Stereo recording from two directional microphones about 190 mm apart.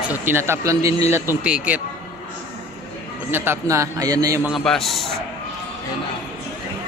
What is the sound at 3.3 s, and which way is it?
A man's voice, 10° right (ahead or behind).